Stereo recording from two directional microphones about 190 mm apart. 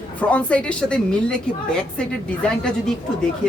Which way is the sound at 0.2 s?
5° left (ahead or behind).